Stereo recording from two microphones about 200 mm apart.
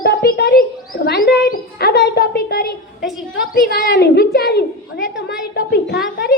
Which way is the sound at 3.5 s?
50° left (ahead or behind).